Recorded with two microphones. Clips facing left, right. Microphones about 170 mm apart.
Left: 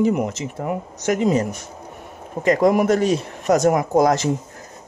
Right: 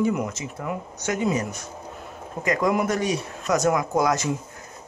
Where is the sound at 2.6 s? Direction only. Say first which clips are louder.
Left 6 dB; 35° left (ahead or behind).